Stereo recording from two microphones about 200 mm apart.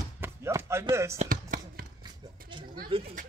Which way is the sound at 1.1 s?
40° right (ahead or behind).